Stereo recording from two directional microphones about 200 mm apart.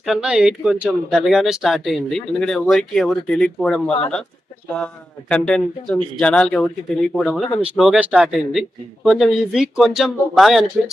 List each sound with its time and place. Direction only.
0.0 s speech: centre (ahead or behind)
5.3 s speech: 5° left (ahead or behind)